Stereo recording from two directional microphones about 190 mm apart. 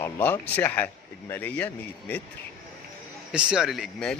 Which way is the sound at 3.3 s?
Centre (ahead or behind).